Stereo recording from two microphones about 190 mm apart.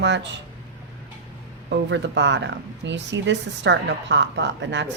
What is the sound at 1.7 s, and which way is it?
Speech, 70° right (ahead or behind).